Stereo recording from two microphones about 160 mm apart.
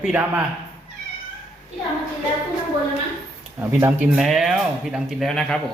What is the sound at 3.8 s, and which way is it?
Speech, 15° right (ahead or behind).